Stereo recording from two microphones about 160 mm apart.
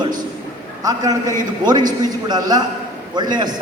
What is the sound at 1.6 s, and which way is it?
A man's voice, 25° right (ahead or behind).